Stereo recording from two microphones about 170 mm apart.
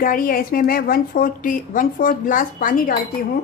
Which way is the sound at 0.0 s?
55° left (ahead or behind).